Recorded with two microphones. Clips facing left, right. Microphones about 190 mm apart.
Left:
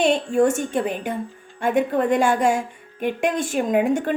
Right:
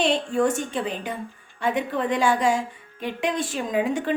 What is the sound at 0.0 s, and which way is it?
A woman's voice, 50° left (ahead or behind).